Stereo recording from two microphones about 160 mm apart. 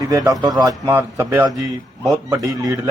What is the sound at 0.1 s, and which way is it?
A man's voice, 20° right (ahead or behind).